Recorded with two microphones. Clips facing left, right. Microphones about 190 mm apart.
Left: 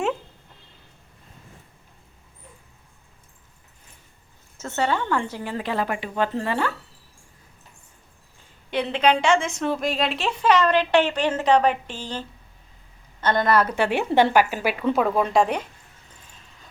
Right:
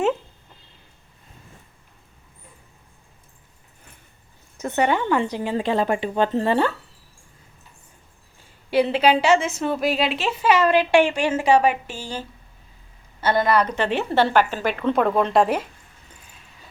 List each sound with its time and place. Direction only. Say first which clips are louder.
4.5 s a woman's voice: right 3 dB; 15° right (ahead or behind)
8.7 s a woman's voice: right 3 dB; 5° right (ahead or behind)
13.2 s a woman's voice: right 1 dB; 5° right (ahead or behind)